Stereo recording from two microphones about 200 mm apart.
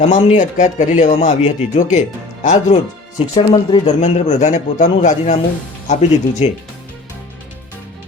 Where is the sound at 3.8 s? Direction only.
35° left (ahead or behind).